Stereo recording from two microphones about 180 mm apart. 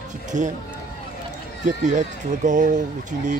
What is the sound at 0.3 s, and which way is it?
Speech, 45° right (ahead or behind).